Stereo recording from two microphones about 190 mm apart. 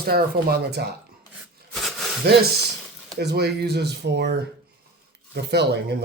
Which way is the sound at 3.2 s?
60° right (ahead or behind).